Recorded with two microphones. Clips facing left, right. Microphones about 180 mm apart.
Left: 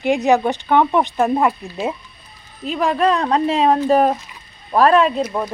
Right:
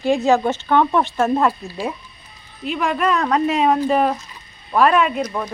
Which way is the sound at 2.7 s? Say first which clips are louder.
Left 3 dB; 35° left (ahead or behind).